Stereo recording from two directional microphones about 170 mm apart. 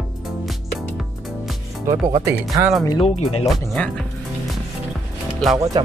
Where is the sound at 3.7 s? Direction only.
5° left (ahead or behind).